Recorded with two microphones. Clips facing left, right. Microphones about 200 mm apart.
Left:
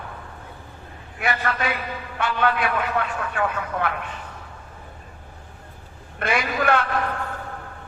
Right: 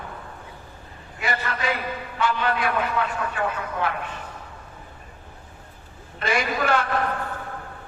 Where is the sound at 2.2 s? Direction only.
60° left (ahead or behind).